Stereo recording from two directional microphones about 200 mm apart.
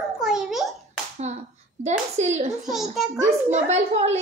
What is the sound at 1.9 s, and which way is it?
Speech, 35° right (ahead or behind).